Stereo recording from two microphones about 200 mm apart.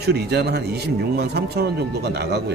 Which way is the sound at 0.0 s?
55° right (ahead or behind).